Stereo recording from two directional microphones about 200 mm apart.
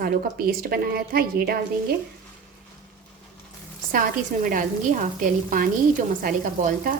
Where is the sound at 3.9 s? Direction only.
45° right (ahead or behind).